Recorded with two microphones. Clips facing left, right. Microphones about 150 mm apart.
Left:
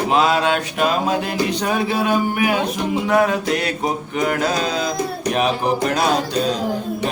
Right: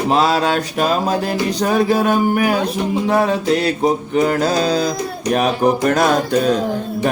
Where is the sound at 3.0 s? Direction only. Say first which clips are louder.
Right 1 dB; 30° right (ahead or behind).